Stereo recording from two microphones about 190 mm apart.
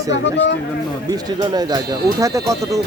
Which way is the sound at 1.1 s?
20° right (ahead or behind).